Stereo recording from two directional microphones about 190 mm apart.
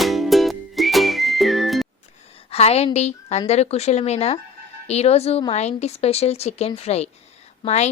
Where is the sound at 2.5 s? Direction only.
35° left (ahead or behind).